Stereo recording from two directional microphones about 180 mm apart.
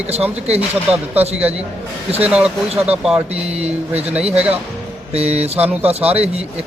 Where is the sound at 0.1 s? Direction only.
35° right (ahead or behind).